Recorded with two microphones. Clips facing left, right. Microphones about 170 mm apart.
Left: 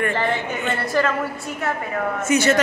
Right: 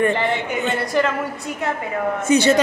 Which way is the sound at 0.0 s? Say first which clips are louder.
Right 3 dB; 20° right (ahead or behind).